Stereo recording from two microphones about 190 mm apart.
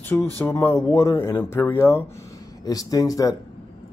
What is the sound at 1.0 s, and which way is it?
Speech, 20° left (ahead or behind).